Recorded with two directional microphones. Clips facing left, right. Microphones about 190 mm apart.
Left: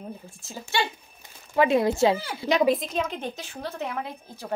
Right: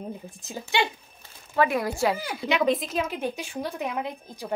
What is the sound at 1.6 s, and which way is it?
Speech, 25° left (ahead or behind).